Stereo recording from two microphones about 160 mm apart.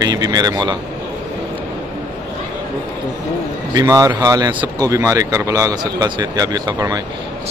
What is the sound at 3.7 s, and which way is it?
A man's voice, 20° right (ahead or behind).